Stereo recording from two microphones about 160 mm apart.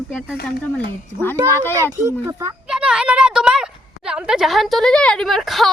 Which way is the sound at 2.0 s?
20° right (ahead or behind).